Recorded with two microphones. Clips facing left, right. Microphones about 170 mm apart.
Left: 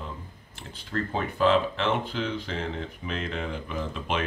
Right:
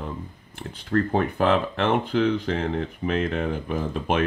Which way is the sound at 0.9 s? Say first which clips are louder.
Right 7 dB; 55° right (ahead or behind).